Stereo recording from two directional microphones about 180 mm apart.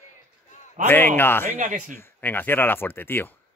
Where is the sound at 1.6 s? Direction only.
45° right (ahead or behind).